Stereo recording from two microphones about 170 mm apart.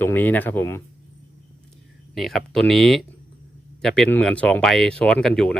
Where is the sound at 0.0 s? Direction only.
10° left (ahead or behind).